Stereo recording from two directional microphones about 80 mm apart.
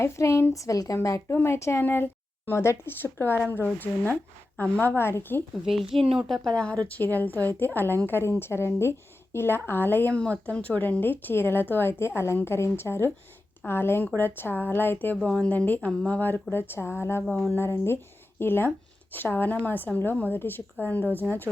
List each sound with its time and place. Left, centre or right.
0.0 s a woman's voice: left
5.6 s a woman's voice: centre
6.5 s a woman's voice: centre